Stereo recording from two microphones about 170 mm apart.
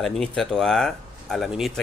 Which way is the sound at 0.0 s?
Centre (ahead or behind).